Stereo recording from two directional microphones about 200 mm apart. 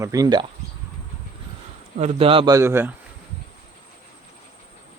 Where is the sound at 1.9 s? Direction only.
30° right (ahead or behind).